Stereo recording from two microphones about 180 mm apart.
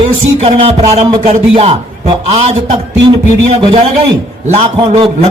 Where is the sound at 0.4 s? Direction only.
30° right (ahead or behind).